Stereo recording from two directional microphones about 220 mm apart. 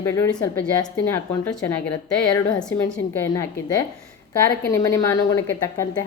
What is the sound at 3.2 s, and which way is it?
A woman's voice, 15° left (ahead or behind).